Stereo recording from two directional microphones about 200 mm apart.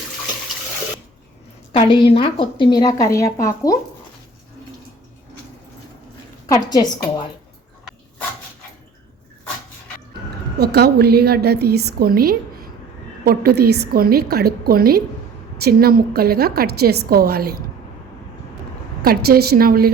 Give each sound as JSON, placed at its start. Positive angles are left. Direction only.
{"t": 1.7, "sound": "a woman's voice", "side_deg": 25}
{"t": 6.5, "sound": "a woman's voice", "side_deg": 20}
{"t": 10.6, "sound": "a woman's voice", "side_deg": -55}
{"t": 19.0, "sound": "a woman's voice", "side_deg": -50}